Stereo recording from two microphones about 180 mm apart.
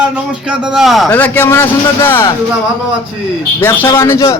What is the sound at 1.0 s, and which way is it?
A man's voice, 10° left (ahead or behind).